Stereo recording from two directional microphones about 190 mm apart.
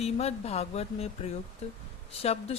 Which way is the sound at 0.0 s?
35° left (ahead or behind).